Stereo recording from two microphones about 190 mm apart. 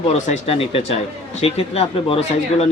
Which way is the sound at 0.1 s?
30° left (ahead or behind).